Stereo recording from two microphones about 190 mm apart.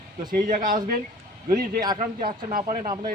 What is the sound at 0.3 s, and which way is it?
Speech, 45° right (ahead or behind).